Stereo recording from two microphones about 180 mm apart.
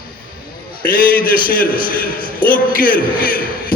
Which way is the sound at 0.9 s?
50° left (ahead or behind).